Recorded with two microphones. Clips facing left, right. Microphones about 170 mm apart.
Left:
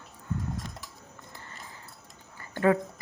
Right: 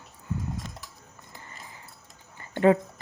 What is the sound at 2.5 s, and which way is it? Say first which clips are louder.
Speech: right 4 dB; 25° right (ahead or behind).